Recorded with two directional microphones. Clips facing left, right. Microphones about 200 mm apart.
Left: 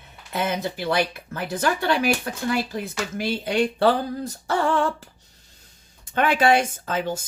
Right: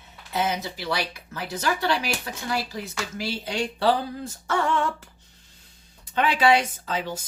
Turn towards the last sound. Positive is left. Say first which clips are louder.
# left 4 dB
turn(degrees=50)  # may be behind; listen again after turning